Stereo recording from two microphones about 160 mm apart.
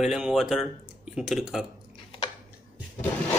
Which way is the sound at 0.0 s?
5° right (ahead or behind).